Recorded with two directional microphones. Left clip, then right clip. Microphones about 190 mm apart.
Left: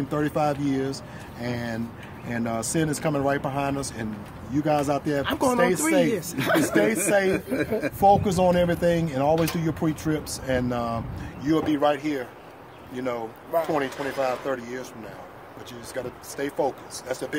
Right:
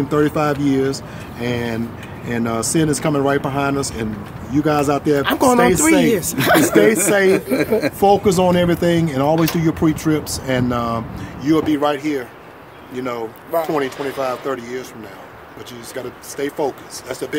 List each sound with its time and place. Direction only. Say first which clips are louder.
0.1 s speech: right 7 dB; 10° left (ahead or behind)
5.2 s speech: right 8 dB; 20° right (ahead or behind)
6.7 s speech: right 8 dB; 10° left (ahead or behind)
15.9 s speech: right 3 dB; 15° left (ahead or behind)